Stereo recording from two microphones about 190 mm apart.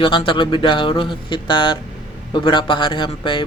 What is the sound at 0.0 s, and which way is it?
Speech, 25° left (ahead or behind).